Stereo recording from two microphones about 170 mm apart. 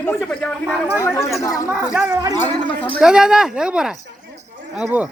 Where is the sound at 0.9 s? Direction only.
15° left (ahead or behind).